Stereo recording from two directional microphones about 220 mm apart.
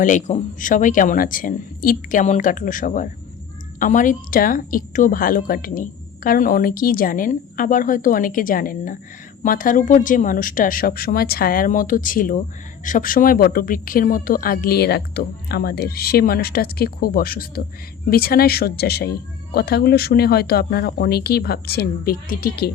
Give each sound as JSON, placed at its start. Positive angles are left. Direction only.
{"t": 0.0, "sound": "a woman's voice", "side_deg": 35}